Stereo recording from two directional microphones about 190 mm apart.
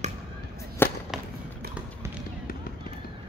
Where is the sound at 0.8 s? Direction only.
10° left (ahead or behind).